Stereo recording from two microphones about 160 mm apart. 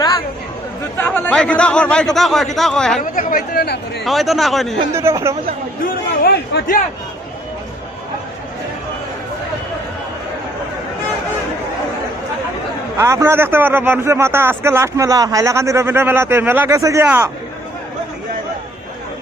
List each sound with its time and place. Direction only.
0.9 s speech: 10° left (ahead or behind)
3.0 s speech: 55° left (ahead or behind); by 4.0 s 80° left
4.0 s speech: centre (ahead or behind)
4.9 s speech: 15° right (ahead or behind)
5.8 s a man's voice: 80° left
13.0 s speech: 15° right (ahead or behind)